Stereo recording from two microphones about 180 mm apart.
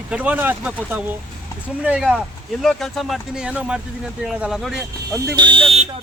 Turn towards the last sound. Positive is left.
turn(degrees=-35)  # may be behind; listen again after turning